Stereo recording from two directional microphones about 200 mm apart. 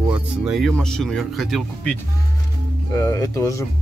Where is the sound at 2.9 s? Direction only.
15° left (ahead or behind).